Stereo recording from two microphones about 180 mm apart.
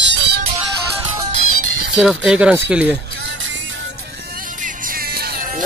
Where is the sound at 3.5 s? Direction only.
90° right; by 5.6 s 50° right (ahead or behind).